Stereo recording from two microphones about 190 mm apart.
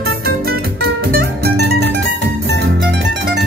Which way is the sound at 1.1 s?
60° right (ahead or behind).